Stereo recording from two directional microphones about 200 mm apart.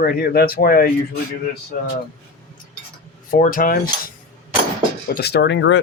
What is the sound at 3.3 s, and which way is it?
Speech, 45° left (ahead or behind).